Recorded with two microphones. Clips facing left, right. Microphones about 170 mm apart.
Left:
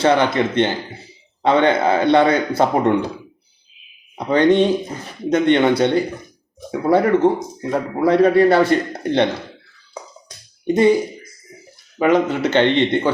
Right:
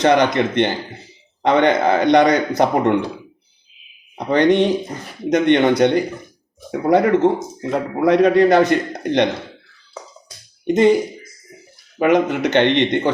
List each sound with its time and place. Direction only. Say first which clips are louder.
0.0 s a man's voice: right 1 dB; 15° right (ahead or behind)
4.4 s a man's voice: even; 20° right (ahead or behind)
6.8 s a man's voice: even; 20° right (ahead or behind)
10.2 s finger snapping: even; 20° right (ahead or behind)
12.1 s a man's voice: right 1 dB; 15° right (ahead or behind)